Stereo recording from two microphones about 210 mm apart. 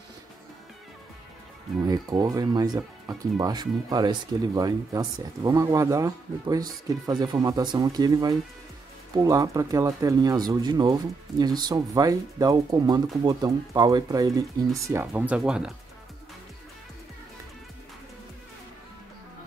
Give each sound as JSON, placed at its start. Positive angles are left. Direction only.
{"t": 1.8, "sound": "speech", "side_deg": -20}